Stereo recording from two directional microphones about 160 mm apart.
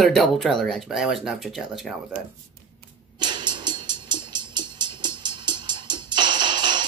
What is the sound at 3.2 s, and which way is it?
Music, 25° right (ahead or behind).